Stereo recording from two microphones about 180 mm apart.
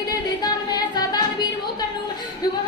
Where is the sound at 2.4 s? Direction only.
20° left (ahead or behind).